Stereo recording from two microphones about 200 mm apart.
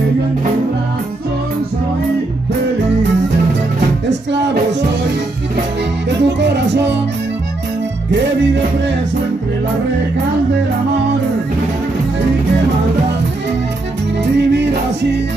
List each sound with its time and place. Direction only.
4.1 s music: 60° right (ahead or behind)
6.0 s music: 60° right (ahead or behind)
14.4 s music: 60° right (ahead or behind)